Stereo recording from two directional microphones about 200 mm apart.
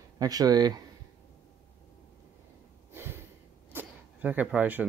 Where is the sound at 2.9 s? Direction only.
10° right (ahead or behind).